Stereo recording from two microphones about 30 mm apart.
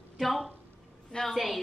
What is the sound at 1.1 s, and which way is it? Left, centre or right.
Speech, centre.